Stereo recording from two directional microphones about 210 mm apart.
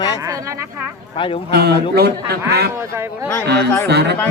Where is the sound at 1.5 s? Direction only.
50° right (ahead or behind).